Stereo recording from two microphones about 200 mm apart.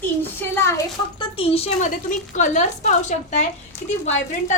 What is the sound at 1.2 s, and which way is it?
A woman's voice, 30° left (ahead or behind).